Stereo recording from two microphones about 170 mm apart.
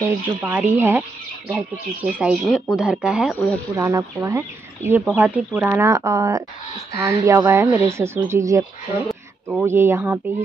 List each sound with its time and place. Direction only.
0.3 s speech: 10° right (ahead or behind)
3.7 s speech: 15° right (ahead or behind)